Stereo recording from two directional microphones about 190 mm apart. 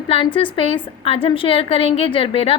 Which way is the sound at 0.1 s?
30° left (ahead or behind).